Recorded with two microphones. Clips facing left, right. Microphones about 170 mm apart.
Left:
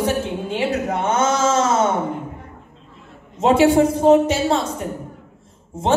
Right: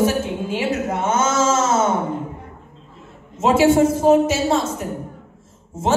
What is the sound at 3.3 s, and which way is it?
Speech, 5° right (ahead or behind).